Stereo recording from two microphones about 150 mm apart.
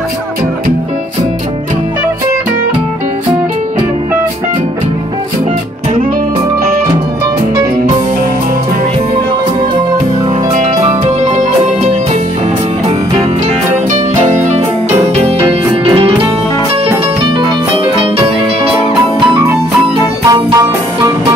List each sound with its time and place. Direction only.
11.2 s music: 50° right (ahead or behind)
13.9 s music: 50° right (ahead or behind)
20.2 s music: 25° right (ahead or behind)